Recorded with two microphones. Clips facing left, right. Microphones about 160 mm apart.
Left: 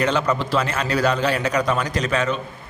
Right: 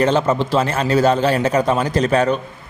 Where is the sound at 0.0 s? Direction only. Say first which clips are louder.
Right 5 dB; 30° right (ahead or behind).